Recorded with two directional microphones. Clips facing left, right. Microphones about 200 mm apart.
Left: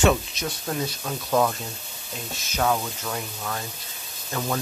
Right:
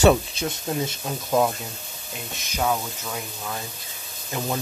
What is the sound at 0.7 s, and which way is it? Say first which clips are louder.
Speech: even; 20° right (ahead or behind).